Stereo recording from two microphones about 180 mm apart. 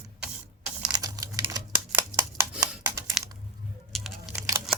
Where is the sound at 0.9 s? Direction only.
20° right (ahead or behind).